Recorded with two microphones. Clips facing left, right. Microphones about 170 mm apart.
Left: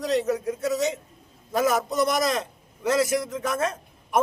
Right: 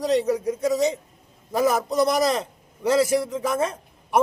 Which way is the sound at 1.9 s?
35° right (ahead or behind).